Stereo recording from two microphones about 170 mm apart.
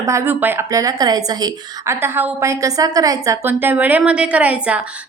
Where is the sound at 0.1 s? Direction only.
15° right (ahead or behind).